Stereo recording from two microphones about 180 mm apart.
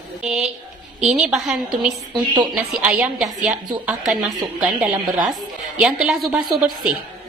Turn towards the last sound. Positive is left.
turn(degrees=-5)  # may be behind; listen again after turning